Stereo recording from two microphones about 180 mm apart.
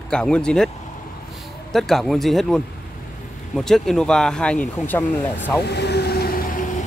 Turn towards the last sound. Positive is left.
turn(degrees=45)  # may be behind; listen again after turning